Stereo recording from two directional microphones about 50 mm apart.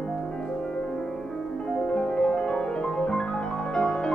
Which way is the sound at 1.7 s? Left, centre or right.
Centre.